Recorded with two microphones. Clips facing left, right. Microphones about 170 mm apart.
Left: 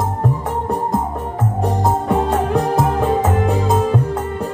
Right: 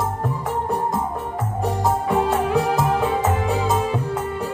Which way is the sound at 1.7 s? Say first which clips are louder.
Left 2 dB; 45° left (ahead or behind).